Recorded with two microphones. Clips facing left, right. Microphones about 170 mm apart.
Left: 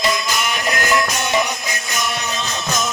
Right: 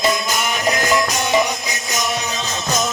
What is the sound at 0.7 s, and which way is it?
Music, 20° right (ahead or behind).